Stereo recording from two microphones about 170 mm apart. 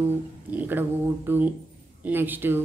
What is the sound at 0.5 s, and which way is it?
Speech, 10° right (ahead or behind).